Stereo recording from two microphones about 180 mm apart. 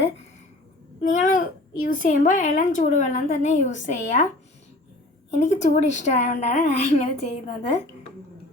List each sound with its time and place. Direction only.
1.0 s a woman's voice: 45° left (ahead or behind)
5.4 s a woman's voice: 40° left (ahead or behind)